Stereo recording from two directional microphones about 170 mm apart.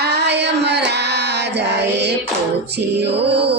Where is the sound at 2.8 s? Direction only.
80° right.